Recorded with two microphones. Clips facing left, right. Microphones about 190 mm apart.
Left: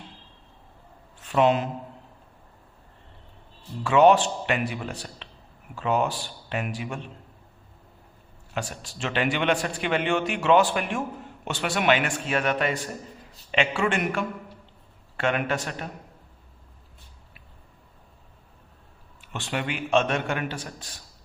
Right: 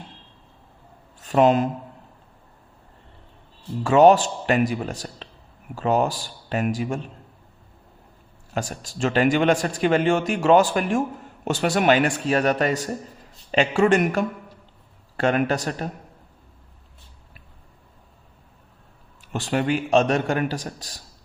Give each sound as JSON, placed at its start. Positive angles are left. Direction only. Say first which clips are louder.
{"t": 1.2, "sound": "speech", "louder": "right 4 dB", "side_deg": -45}
{"t": 3.8, "sound": "a man's voice", "louder": "right 3 dB", "side_deg": -40}
{"t": 8.5, "sound": "a man's voice", "louder": "right 4 dB", "side_deg": -40}
{"t": 19.3, "sound": "a man's voice", "louder": "right 8 dB", "side_deg": -40}